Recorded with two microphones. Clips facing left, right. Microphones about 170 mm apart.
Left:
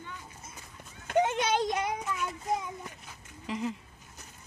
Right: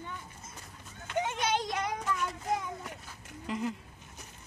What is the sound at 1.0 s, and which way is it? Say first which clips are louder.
Clip-clop: left 5 dB; 55° left (ahead or behind).